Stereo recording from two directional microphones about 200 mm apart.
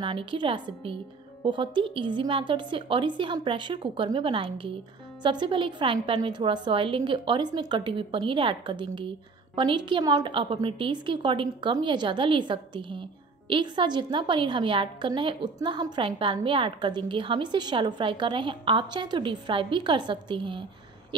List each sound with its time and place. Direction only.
0.0 s a woman's voice: 25° right (ahead or behind)